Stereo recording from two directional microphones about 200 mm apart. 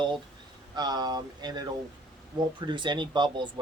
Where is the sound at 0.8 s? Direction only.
20° right (ahead or behind).